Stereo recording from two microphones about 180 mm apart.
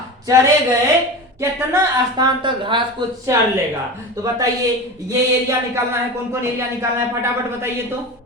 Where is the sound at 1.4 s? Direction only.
15° right (ahead or behind).